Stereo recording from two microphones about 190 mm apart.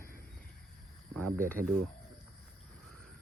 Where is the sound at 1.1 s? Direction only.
10° left (ahead or behind).